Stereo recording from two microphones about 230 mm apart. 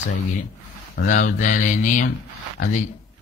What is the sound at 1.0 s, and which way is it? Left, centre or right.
Speech, left.